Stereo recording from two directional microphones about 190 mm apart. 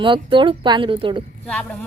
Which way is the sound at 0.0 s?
25° right (ahead or behind).